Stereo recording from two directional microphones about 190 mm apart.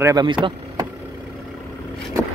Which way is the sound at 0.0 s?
20° right (ahead or behind).